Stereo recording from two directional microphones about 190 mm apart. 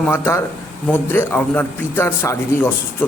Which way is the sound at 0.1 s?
10° left (ahead or behind).